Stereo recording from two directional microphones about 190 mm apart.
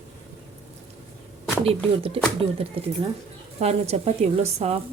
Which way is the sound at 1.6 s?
30° right (ahead or behind).